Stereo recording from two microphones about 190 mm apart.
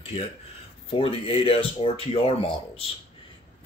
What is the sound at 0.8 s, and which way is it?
Speech, 30° left (ahead or behind).